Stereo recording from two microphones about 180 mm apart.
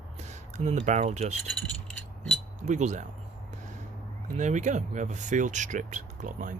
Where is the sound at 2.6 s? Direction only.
40° right (ahead or behind).